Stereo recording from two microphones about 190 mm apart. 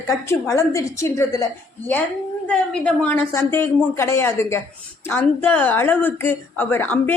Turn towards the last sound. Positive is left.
turn(degrees=10)  # may be behind; listen again after turning